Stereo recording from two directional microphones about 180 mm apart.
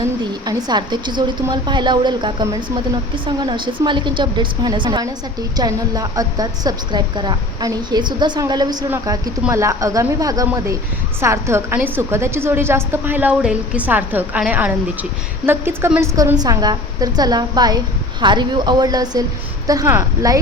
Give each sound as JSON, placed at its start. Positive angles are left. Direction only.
{"t": 0.4, "sound": "a woman's voice", "side_deg": -25}